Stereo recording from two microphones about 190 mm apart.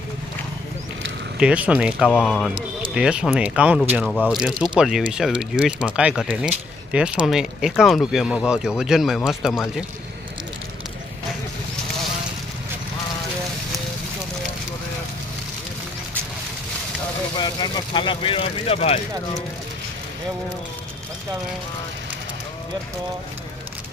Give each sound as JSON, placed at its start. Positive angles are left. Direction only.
{"t": 1.4, "sound": "speech", "side_deg": -5}
{"t": 2.0, "sound": "speech", "side_deg": 5}
{"t": 17.4, "sound": "speech", "side_deg": 25}